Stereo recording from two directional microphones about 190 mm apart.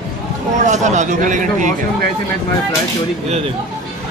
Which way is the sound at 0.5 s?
40° right (ahead or behind).